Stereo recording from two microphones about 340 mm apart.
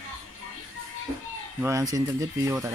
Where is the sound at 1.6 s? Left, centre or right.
Centre.